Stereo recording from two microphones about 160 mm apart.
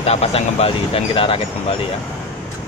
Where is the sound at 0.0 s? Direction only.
40° left (ahead or behind).